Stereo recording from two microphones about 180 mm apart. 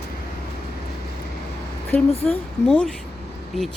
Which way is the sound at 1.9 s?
10° left (ahead or behind).